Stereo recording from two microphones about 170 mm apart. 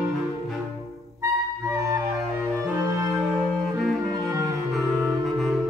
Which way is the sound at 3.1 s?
Centre (ahead or behind).